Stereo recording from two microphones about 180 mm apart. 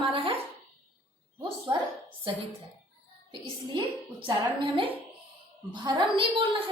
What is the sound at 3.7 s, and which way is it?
A woman's voice, 30° right (ahead or behind).